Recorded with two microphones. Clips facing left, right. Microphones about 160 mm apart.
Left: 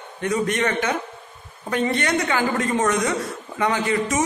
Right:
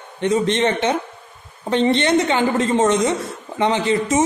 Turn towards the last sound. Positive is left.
turn(degrees=-25)  # may be behind; listen again after turning